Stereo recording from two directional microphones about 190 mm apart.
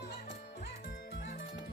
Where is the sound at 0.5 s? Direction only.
45° left (ahead or behind).